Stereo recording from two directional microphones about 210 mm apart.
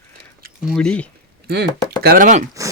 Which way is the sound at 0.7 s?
5° left (ahead or behind).